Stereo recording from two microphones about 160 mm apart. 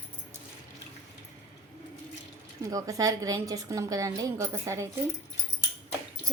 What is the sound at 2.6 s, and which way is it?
A woman's voice, 20° right (ahead or behind).